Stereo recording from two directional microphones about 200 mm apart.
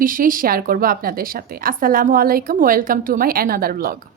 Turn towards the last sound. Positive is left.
turn(degrees=-45)  # may be behind; listen again after turning